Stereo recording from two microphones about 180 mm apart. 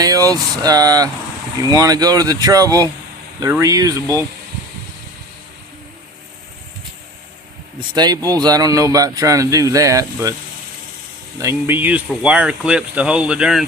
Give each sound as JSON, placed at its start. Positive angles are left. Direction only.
{"t": 0.0, "sound": "speech", "side_deg": -20}
{"t": 7.8, "sound": "speech", "side_deg": -20}
{"t": 11.3, "sound": "speech", "side_deg": -15}